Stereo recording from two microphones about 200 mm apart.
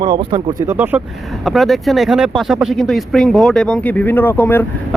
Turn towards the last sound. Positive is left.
turn(degrees=10)  # may be behind; listen again after turning